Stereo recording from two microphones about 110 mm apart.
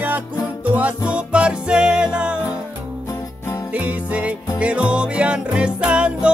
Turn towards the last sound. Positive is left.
turn(degrees=-10)  # may be behind; listen again after turning